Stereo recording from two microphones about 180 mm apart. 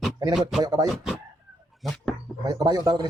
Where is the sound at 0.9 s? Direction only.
Centre (ahead or behind).